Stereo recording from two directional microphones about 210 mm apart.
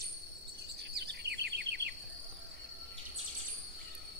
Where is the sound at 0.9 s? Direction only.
50° right (ahead or behind).